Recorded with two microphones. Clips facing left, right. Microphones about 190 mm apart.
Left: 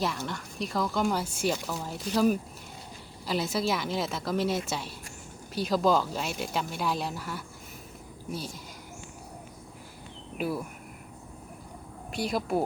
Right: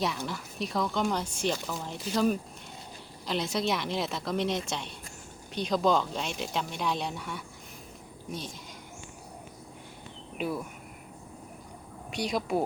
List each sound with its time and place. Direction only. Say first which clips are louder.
0.0 s speech: even; centre (ahead or behind)
10.3 s speech: left 1 dB; 5° left (ahead or behind)
12.1 s speech: left 1 dB; centre (ahead or behind)